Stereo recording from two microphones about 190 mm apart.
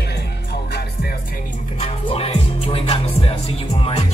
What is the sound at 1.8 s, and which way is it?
Music, 35° left (ahead or behind).